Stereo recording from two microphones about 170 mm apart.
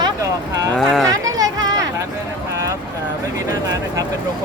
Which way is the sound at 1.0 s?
20° right (ahead or behind).